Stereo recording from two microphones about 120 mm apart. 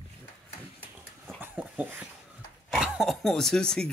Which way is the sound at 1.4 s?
15° right (ahead or behind).